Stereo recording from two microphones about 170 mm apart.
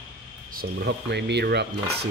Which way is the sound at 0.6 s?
75° right (ahead or behind).